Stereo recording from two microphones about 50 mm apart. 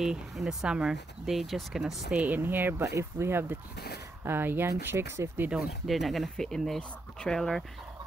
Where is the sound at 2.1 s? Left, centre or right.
Right.